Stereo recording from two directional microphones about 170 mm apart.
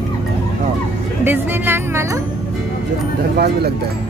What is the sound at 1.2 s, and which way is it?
Music, 10° right (ahead or behind).